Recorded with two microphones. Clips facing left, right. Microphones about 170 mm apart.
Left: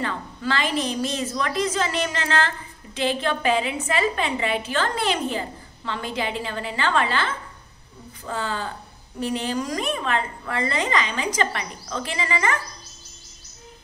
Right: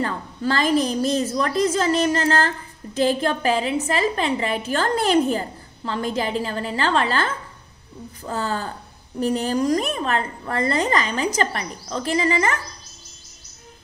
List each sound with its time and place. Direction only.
0.0 s a woman's voice: 40° right (ahead or behind)